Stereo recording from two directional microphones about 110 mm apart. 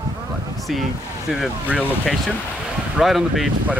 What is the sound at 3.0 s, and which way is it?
Speech, centre (ahead or behind).